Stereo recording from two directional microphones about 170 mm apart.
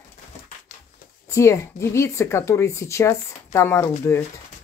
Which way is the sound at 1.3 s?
15° left (ahead or behind).